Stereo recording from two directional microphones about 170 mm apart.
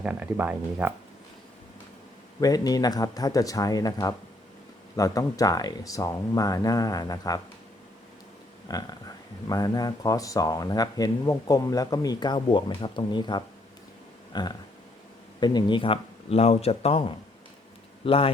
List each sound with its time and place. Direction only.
0.0 s speech: 10° right (ahead or behind)
2.4 s speech: 20° left (ahead or behind)
8.6 s a man's voice: 20° left (ahead or behind)